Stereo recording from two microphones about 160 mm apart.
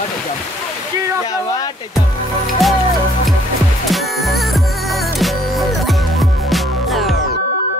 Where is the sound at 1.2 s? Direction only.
25° left (ahead or behind).